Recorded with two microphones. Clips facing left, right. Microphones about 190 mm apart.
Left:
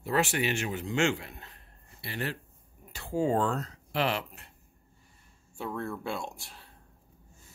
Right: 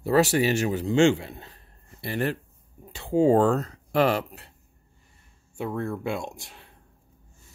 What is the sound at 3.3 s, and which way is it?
Speech, 45° right (ahead or behind).